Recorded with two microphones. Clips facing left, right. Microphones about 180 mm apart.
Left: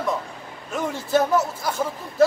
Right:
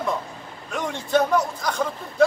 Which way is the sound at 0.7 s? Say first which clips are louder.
Even; 5° left (ahead or behind).